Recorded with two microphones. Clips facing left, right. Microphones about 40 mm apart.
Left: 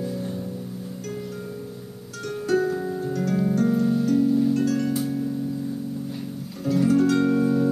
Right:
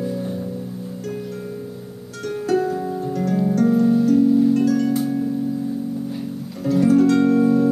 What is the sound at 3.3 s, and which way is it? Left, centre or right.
Harp, centre.